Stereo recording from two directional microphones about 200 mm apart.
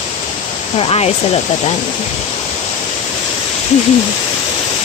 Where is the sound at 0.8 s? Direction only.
30° left (ahead or behind).